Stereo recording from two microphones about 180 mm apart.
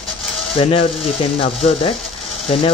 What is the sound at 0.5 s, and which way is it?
Speech, 30° left (ahead or behind).